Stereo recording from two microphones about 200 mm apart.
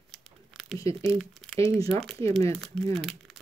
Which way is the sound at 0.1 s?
Centre (ahead or behind).